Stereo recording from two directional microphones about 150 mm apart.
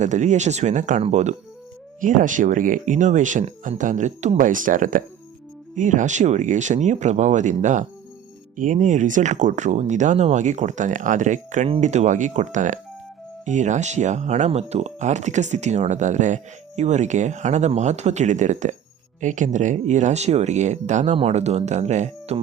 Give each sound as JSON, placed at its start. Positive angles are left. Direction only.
{"t": 0.0, "sound": "speech", "side_deg": -55}
{"t": 2.0, "sound": "speech", "side_deg": -60}